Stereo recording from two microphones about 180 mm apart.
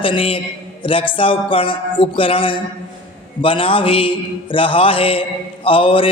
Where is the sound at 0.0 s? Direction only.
30° left (ahead or behind).